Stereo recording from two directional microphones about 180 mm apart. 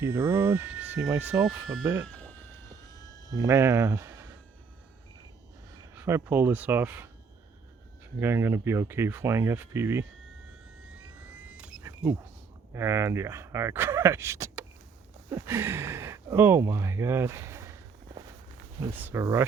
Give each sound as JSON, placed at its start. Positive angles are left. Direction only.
{"t": 0.0, "sound": "speech", "side_deg": -10}
{"t": 2.0, "sound": "a sound", "side_deg": 5}
{"t": 2.8, "sound": "a sound", "side_deg": 20}
{"t": 3.3, "sound": "speech", "side_deg": -15}
{"t": 5.8, "sound": "speech", "side_deg": -15}
{"t": 8.2, "sound": "speech", "side_deg": -15}
{"t": 10.8, "sound": "vehicle", "side_deg": -5}
{"t": 11.8, "sound": "a sound", "side_deg": -15}
{"t": 12.7, "sound": "speech", "side_deg": -15}